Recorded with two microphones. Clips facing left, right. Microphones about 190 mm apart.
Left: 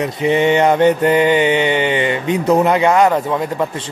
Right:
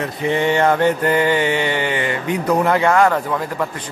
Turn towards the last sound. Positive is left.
turn(degrees=20)  # may be behind; listen again after turning